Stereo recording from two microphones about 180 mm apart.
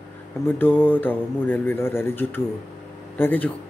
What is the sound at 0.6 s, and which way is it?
Speech, 10° left (ahead or behind).